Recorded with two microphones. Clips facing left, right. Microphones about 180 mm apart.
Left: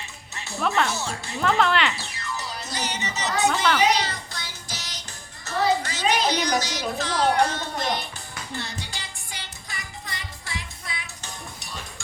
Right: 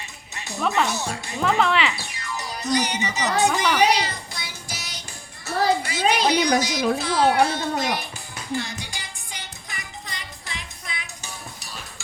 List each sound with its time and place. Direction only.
0.3 s music: 15° right (ahead or behind)
0.9 s speech: 15° right (ahead or behind)
1.4 s speech: centre (ahead or behind)
2.0 s music: 15° right (ahead or behind)
3.4 s child singing: 15° right (ahead or behind)
5.5 s a sound: 10° right (ahead or behind)
7.0 s speech: 10° right (ahead or behind)
8.5 s music: 15° right (ahead or behind)